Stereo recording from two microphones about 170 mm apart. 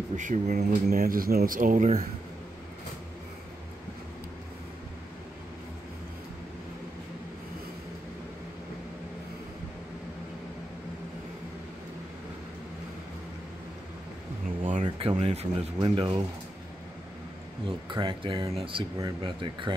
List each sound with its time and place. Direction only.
0.1 s speech: 45° right (ahead or behind)
0.8 s speech: 60° right (ahead or behind)
14.6 s speech: 45° right (ahead or behind)
17.6 s speech: 30° right (ahead or behind)